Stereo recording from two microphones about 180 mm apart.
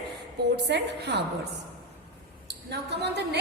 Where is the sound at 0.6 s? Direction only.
70° right (ahead or behind).